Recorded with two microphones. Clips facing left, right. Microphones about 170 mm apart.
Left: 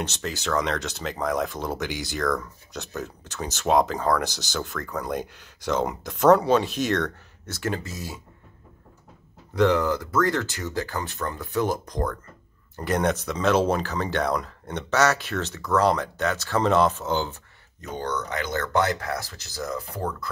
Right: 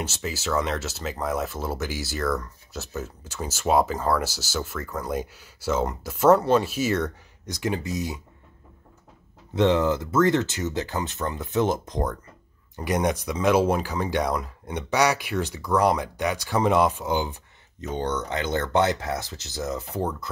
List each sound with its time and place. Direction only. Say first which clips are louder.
0.0 s speech: even; 5° right (ahead or behind)
9.6 s speech: even; 20° right (ahead or behind)